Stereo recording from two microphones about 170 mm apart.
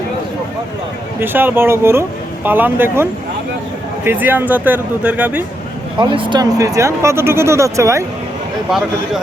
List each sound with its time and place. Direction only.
1.2 s speech: 10° right (ahead or behind)
6.0 s speech: 30° right (ahead or behind)